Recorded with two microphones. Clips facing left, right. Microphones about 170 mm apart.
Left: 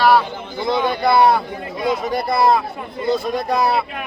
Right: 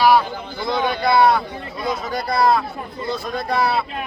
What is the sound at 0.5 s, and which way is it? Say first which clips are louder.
Speech: left 4 dB; 15° left (ahead or behind).